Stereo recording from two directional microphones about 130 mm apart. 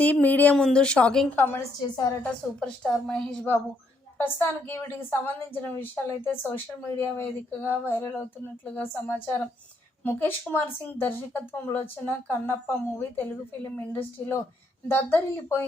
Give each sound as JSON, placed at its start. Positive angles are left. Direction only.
{"t": 0.0, "sound": "speech", "side_deg": 15}
{"t": 1.4, "sound": "a woman's voice", "side_deg": 15}